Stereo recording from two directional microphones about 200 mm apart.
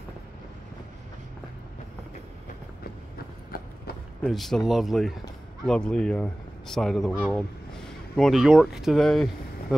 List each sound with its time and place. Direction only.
4.2 s a man's voice: centre (ahead or behind)